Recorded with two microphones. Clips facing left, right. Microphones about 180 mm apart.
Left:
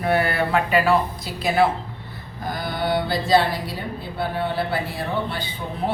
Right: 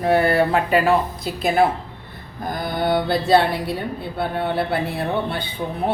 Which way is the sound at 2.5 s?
50° right (ahead or behind).